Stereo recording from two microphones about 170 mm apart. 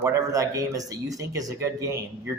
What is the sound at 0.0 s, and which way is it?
A man's voice, 20° right (ahead or behind).